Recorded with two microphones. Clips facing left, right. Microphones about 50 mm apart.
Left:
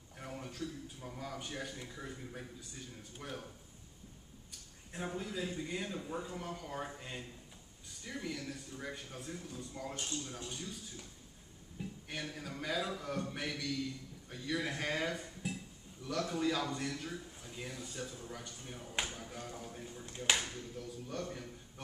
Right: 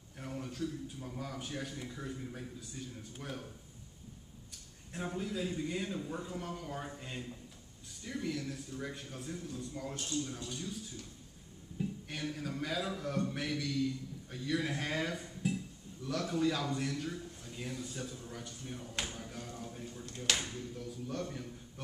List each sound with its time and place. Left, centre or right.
0.2 s a man's voice: centre
5.0 s a man's voice: centre
5.9 s a man's voice: centre
9.9 s speech: left
12.1 s a man's voice: centre
20.5 s a man's voice: centre